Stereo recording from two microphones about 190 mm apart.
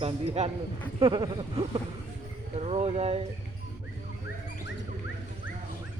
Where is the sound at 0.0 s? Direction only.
30° right (ahead or behind).